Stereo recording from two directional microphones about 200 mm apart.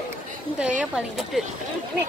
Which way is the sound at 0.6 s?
5° right (ahead or behind).